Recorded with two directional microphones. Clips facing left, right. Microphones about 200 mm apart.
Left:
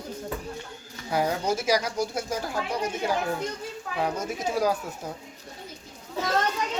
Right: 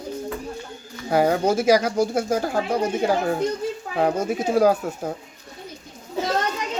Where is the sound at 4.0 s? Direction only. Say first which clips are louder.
Right 7 dB; 55° right (ahead or behind).